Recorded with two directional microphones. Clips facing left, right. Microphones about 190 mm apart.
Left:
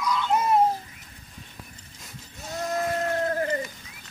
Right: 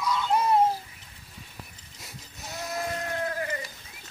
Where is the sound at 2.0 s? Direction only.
10° right (ahead or behind).